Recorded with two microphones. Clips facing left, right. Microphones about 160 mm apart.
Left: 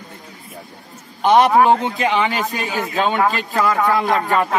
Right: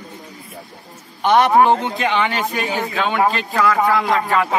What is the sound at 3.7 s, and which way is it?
Speech, 10° right (ahead or behind).